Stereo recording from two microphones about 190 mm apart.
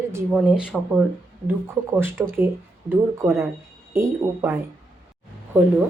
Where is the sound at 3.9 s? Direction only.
10° right (ahead or behind).